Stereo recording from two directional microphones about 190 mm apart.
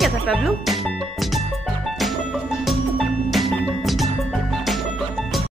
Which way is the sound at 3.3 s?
Centre (ahead or behind).